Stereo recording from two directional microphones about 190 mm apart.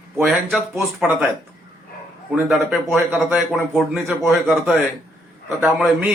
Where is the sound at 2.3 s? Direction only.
5° right (ahead or behind).